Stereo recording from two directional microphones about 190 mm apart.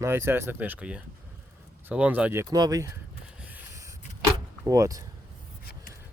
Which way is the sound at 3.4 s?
10° right (ahead or behind).